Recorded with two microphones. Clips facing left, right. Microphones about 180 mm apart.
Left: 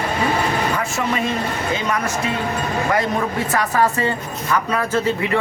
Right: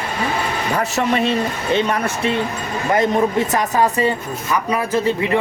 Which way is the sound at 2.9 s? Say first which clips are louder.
Right 7 dB; 20° right (ahead or behind).